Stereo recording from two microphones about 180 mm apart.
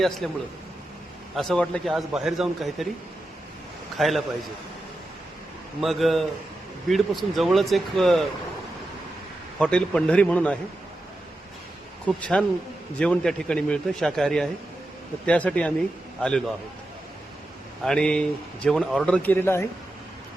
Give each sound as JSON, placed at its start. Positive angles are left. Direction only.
{"t": 0.2, "sound": "speech", "side_deg": 0}
{"t": 3.9, "sound": "a man's voice", "side_deg": 0}
{"t": 5.8, "sound": "speech", "side_deg": 0}
{"t": 9.6, "sound": "speech", "side_deg": 5}
{"t": 12.0, "sound": "speech", "side_deg": 5}
{"t": 17.8, "sound": "speech", "side_deg": 5}